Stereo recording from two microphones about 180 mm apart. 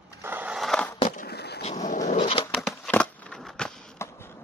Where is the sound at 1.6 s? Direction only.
40° left (ahead or behind).